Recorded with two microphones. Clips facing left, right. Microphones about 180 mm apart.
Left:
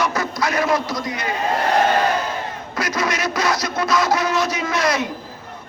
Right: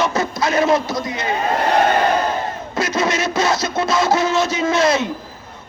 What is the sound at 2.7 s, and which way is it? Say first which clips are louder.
Speech: right 3 dB; 25° right (ahead or behind).